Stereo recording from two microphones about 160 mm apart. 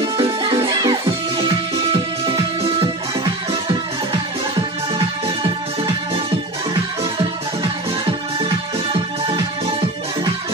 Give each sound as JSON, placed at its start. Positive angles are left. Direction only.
{"t": 0.0, "sound": "music", "side_deg": -30}
{"t": 4.9, "sound": "music", "side_deg": -30}
{"t": 7.6, "sound": "music", "side_deg": -30}